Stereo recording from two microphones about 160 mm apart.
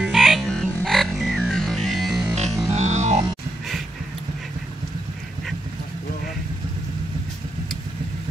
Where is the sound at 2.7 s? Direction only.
45° right (ahead or behind).